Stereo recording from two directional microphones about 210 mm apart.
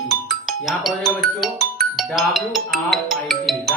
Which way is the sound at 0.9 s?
Centre (ahead or behind).